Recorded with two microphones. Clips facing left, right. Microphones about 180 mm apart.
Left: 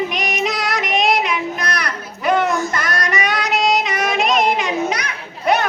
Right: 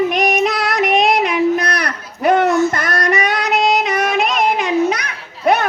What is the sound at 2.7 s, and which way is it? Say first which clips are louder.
Child singing: right 4 dB; 55° right (ahead or behind).